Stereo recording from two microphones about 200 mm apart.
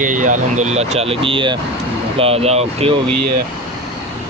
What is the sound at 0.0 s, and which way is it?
Speech, 40° right (ahead or behind).